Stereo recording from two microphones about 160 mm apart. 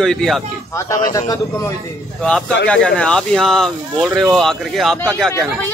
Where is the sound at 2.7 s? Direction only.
5° left (ahead or behind).